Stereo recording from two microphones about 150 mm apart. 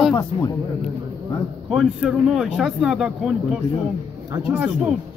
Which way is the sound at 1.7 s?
Centre (ahead or behind).